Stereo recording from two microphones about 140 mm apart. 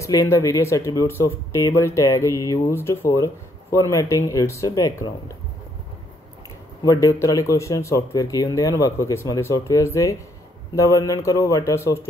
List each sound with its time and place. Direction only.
0.0 s speech: 25° left (ahead or behind)
6.8 s speech: 25° left (ahead or behind)